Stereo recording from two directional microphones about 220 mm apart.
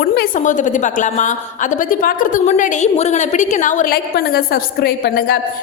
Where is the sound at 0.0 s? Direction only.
45° left (ahead or behind).